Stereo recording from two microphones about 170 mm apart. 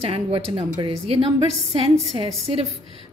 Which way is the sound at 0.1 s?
35° right (ahead or behind).